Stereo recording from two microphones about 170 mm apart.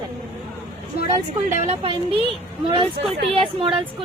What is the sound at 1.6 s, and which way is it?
A woman's voice, 35° right (ahead or behind).